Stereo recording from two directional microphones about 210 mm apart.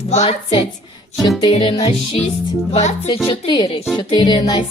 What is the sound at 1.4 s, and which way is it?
Music, 25° left (ahead or behind).